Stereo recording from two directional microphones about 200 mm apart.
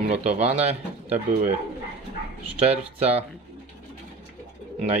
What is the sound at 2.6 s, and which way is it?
Speech, 30° right (ahead or behind).